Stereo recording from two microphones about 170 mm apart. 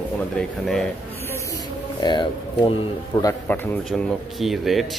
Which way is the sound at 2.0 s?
25° left (ahead or behind).